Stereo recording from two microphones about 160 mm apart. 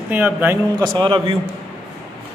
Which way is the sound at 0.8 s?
30° right (ahead or behind).